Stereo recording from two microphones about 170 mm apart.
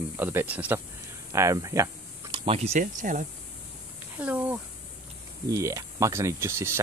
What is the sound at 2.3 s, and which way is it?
Speech, 35° right (ahead or behind).